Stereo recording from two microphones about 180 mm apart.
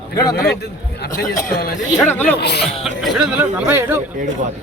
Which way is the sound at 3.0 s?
Centre (ahead or behind).